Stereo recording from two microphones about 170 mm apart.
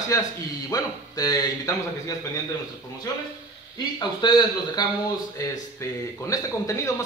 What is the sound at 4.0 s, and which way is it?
Speech, 25° left (ahead or behind).